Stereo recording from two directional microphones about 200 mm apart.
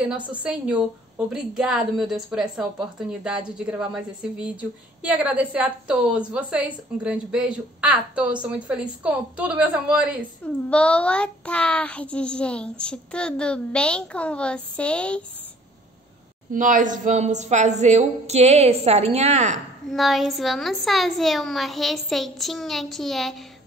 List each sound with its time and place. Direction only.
0.3 s a woman's voice: 5° right (ahead or behind)
10.4 s a woman's voice: 5° left (ahead or behind)
16.5 s speech: 40° right (ahead or behind)
19.9 s a woman's voice: centre (ahead or behind)